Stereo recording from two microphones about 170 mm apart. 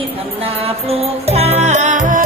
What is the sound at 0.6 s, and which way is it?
Music, 35° right (ahead or behind).